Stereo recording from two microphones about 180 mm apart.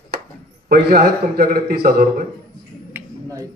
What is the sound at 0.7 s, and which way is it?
Speech, 60° right (ahead or behind).